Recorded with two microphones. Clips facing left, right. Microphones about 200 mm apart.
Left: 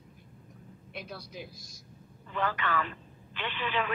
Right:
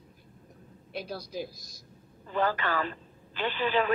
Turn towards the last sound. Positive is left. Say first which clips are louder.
# right 6 dB
turn(degrees=-35)  # may be behind; listen again after turning